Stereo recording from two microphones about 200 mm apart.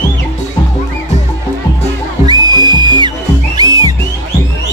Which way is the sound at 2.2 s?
20° right (ahead or behind).